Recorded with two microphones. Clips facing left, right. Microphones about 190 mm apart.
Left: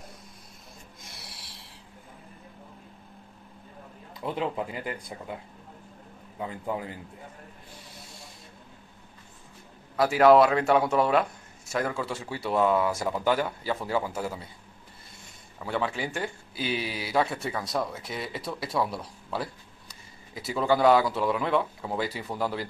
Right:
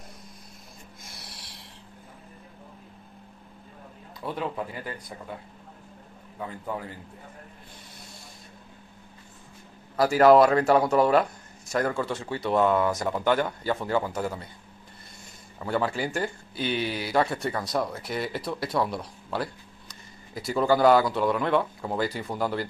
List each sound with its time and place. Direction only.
1.0 s a sound: 5° left (ahead or behind)
4.2 s a man's voice: 20° left (ahead or behind)
9.9 s speech: centre (ahead or behind)
15.6 s speech: centre (ahead or behind)